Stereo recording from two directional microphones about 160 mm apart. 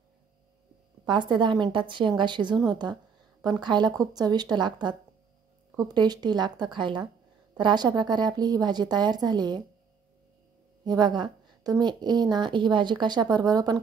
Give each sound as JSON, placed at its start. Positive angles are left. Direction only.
{"t": 1.0, "sound": "a woman's voice", "side_deg": -30}
{"t": 10.9, "sound": "a woman's voice", "side_deg": -25}